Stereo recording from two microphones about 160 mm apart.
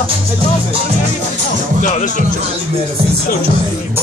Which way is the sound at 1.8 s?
50° left (ahead or behind).